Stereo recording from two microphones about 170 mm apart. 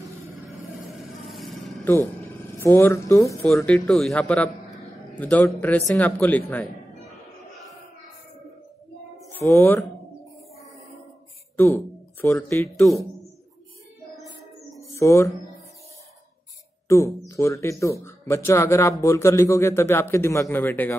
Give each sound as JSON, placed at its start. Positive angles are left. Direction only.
{"t": 0.9, "sound": "vehicle", "side_deg": 0}
{"t": 1.9, "sound": "speech", "side_deg": 10}
{"t": 3.6, "sound": "speech", "side_deg": 5}
{"t": 9.3, "sound": "speech", "side_deg": 10}
{"t": 11.5, "sound": "speech", "side_deg": 10}
{"t": 12.6, "sound": "a man's voice", "side_deg": 0}
{"t": 15.0, "sound": "speech", "side_deg": 15}
{"t": 16.8, "sound": "speech", "side_deg": 15}